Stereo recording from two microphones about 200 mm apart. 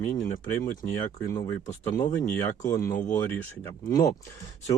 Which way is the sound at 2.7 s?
45° left (ahead or behind).